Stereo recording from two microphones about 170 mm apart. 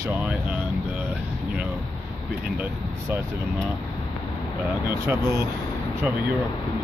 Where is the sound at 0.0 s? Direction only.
10° right (ahead or behind).